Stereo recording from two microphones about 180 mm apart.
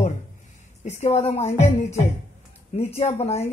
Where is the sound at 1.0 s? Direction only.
35° left (ahead or behind).